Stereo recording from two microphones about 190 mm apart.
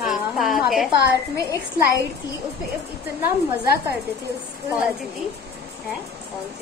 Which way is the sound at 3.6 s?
55° left (ahead or behind).